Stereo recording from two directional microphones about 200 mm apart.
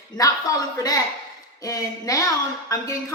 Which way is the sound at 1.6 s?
15° left (ahead or behind).